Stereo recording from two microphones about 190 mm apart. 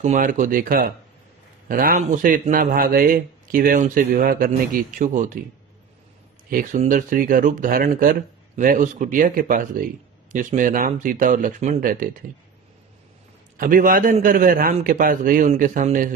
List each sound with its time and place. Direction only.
0.0 s speech: 45° right (ahead or behind)
6.5 s speech: 45° right (ahead or behind)
13.6 s speech: 45° right (ahead or behind)